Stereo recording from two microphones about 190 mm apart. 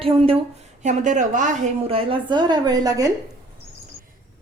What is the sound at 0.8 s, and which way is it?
A woman's voice, 40° right (ahead or behind).